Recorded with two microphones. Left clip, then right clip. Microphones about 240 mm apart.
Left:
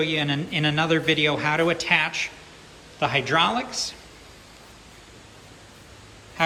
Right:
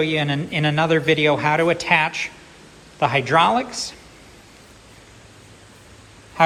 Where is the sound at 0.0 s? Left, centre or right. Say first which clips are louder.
Right 3 dB; centre.